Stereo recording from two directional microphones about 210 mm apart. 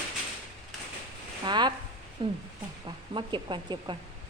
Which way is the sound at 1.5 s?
20° right (ahead or behind).